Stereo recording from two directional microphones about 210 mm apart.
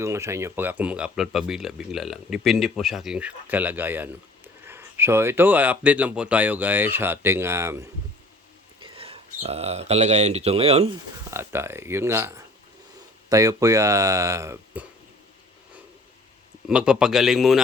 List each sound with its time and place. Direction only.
0.0 s speech: 15° right (ahead or behind)
8.8 s speech: 25° right (ahead or behind)
11.3 s speech: 10° right (ahead or behind)
16.6 s speech: 5° right (ahead or behind)